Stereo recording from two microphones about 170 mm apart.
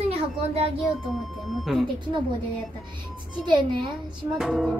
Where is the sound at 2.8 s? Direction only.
25° right (ahead or behind).